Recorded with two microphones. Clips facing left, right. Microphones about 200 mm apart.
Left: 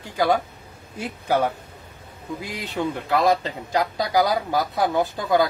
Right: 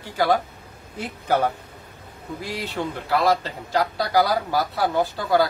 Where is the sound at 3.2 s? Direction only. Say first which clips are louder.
Left 1 dB; 20° left (ahead or behind).